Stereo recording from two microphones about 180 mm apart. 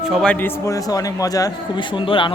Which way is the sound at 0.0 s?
Centre (ahead or behind).